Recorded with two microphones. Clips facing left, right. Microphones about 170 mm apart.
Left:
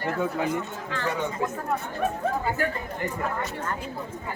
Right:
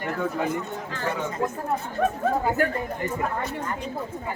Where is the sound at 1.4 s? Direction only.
Centre (ahead or behind).